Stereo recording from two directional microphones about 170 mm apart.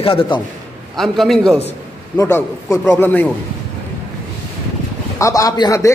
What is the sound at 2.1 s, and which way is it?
A man's voice, 15° left (ahead or behind).